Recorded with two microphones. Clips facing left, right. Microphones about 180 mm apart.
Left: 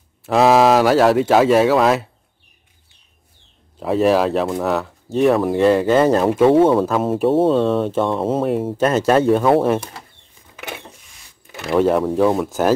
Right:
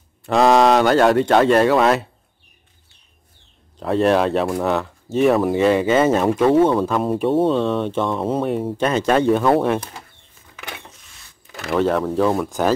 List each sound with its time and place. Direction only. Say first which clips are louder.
0.2 s speech: left 1 dB; 5° left (ahead or behind)
3.8 s speech: left 1 dB; 5° left (ahead or behind)
6.4 s speech: left 3 dB; 25° left (ahead or behind)
6.8 s speech: left 2 dB; centre (ahead or behind)
11.5 s speech: left 3 dB; centre (ahead or behind)